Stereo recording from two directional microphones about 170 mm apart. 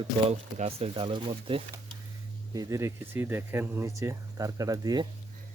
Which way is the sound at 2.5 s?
20° right (ahead or behind).